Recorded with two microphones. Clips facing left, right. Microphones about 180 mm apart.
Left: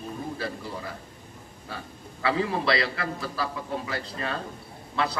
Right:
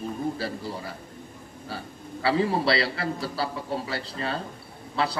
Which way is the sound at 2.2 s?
30° right (ahead or behind).